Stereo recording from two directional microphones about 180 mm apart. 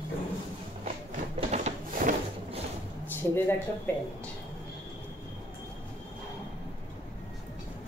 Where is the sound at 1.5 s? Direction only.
45° right (ahead or behind).